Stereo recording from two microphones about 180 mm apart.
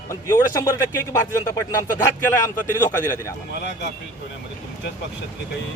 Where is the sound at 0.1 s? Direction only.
15° left (ahead or behind).